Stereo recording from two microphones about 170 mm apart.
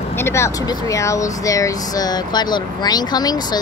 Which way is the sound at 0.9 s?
20° left (ahead or behind).